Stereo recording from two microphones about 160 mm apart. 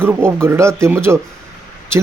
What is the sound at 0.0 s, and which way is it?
Speech, 15° right (ahead or behind).